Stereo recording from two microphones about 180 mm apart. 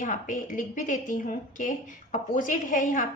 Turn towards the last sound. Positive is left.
turn(degrees=45)  # may be behind; listen again after turning